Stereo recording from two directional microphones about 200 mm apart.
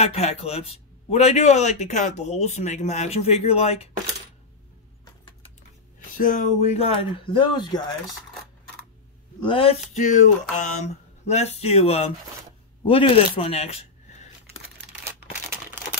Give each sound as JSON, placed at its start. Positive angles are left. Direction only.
{"t": 0.0, "sound": "speech", "side_deg": 30}
{"t": 6.1, "sound": "speech", "side_deg": 40}
{"t": 9.4, "sound": "speech", "side_deg": 25}